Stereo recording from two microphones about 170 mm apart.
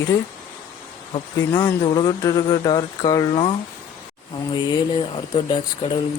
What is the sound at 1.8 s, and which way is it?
Speech, 30° left (ahead or behind).